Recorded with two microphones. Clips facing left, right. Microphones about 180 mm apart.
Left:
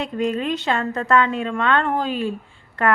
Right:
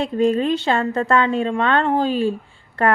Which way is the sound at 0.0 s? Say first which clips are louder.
Right 5 dB; 30° right (ahead or behind).